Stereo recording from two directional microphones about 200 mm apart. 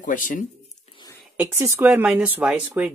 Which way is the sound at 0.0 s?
40° left (ahead or behind).